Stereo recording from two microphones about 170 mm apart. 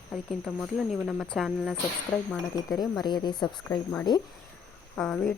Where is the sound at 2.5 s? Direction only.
20° left (ahead or behind).